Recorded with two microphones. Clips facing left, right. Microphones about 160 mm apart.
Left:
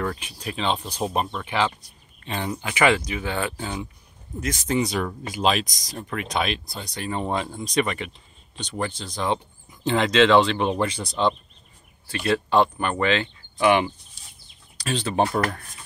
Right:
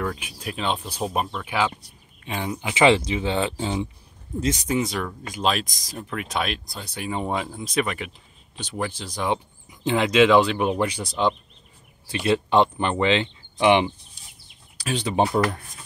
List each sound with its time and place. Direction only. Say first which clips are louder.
0.0 s speech: even; 5° right (ahead or behind)
2.7 s speech: right 3 dB; 25° right (ahead or behind)
4.6 s speech: left 1 dB; centre (ahead or behind)